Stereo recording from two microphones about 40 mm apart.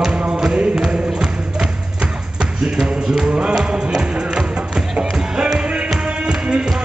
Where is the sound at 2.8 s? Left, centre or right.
Centre.